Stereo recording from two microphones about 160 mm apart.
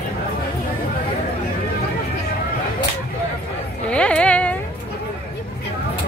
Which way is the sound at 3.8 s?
5° left (ahead or behind).